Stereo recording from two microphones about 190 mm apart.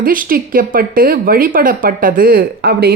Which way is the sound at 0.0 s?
45° right (ahead or behind).